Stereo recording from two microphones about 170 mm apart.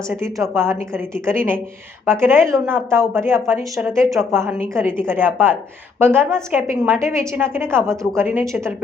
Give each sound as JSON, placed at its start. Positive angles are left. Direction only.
{"t": 0.5, "sound": "a woman's voice", "side_deg": -15}